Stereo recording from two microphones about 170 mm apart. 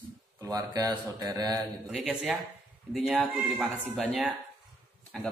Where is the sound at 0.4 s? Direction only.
20° right (ahead or behind).